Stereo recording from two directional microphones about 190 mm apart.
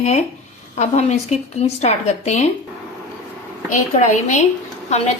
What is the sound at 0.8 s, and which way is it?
A woman's voice, 35° left (ahead or behind).